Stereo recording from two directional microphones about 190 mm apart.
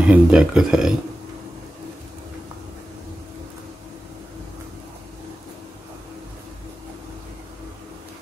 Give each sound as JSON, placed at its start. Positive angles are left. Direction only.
{"t": 0.0, "sound": "speech", "side_deg": -5}